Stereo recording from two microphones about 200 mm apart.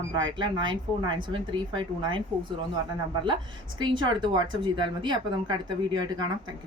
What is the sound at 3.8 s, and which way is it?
Speech, 25° right (ahead or behind).